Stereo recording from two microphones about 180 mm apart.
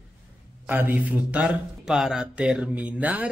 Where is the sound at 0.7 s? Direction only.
10° right (ahead or behind).